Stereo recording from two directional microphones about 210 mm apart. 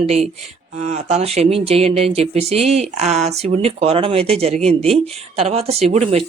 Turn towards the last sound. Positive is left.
turn(degrees=-30)  # may be behind; listen again after turning